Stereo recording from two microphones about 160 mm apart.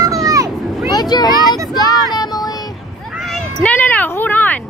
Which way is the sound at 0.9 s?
25° left (ahead or behind).